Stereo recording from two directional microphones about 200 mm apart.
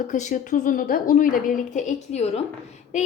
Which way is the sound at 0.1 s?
40° left (ahead or behind).